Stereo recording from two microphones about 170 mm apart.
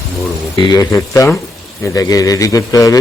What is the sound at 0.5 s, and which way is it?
Speech, 20° left (ahead or behind).